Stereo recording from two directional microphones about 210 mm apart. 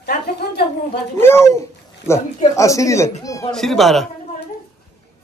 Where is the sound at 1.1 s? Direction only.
10° left (ahead or behind).